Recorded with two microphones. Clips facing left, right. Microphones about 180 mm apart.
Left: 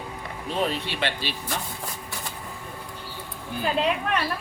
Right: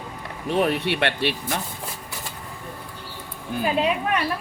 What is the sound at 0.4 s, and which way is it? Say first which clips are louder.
Speech: right 6 dB; 65° right (ahead or behind).